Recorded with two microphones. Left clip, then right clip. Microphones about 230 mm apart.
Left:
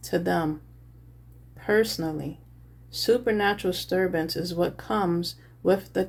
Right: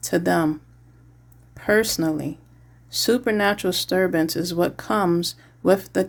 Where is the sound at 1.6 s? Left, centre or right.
Right.